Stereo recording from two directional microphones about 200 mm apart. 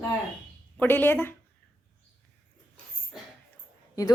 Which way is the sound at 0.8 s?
10° left (ahead or behind).